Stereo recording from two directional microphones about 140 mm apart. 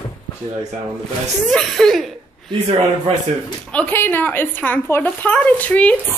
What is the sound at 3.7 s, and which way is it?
Speech, 10° left (ahead or behind).